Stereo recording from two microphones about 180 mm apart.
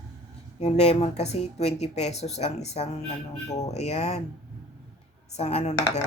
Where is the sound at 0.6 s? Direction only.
35° left (ahead or behind).